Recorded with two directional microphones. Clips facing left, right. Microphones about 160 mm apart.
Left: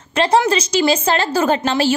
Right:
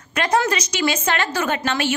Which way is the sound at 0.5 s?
30° left (ahead or behind).